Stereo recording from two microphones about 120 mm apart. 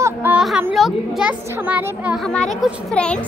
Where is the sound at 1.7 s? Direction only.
15° right (ahead or behind).